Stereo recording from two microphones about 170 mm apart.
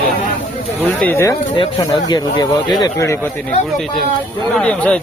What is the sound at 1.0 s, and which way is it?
Speech, 15° left (ahead or behind).